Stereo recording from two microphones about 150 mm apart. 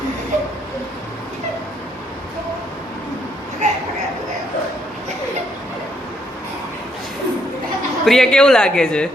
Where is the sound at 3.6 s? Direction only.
50° right (ahead or behind).